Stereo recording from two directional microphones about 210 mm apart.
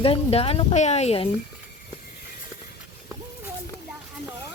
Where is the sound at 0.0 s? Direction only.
25° left (ahead or behind).